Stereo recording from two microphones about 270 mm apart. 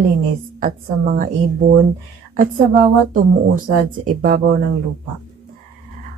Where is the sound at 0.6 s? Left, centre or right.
Right.